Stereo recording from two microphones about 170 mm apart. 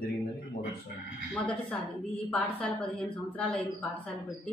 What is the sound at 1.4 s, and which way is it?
A woman's voice, 5° left (ahead or behind).